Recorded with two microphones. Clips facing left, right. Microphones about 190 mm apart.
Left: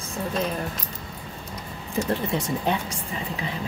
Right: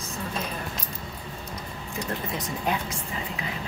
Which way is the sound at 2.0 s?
30° left (ahead or behind).